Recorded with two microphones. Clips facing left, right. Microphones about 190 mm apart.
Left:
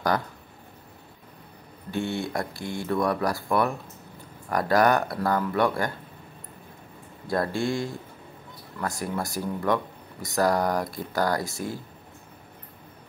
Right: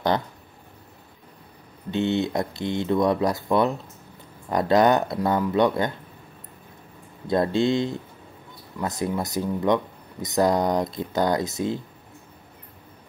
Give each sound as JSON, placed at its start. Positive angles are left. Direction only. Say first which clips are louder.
{"t": 1.9, "sound": "speech", "louder": "right 5 dB", "side_deg": -20}
{"t": 7.2, "sound": "speech", "louder": "right 5 dB", "side_deg": -20}